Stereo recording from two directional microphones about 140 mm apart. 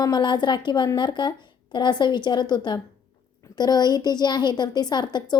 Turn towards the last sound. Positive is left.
turn(degrees=30)  # may be behind; listen again after turning